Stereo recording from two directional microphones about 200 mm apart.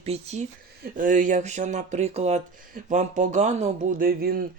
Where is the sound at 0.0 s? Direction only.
30° right (ahead or behind).